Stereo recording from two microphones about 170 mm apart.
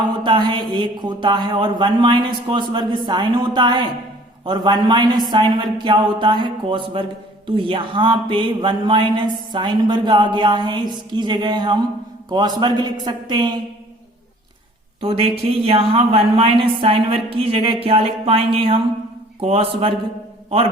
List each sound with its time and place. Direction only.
0.2 s speech: 25° right (ahead or behind)
15.0 s speech: 35° right (ahead or behind)